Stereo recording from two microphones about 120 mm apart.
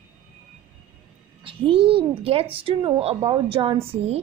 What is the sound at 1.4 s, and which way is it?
A woman's voice, 50° right (ahead or behind).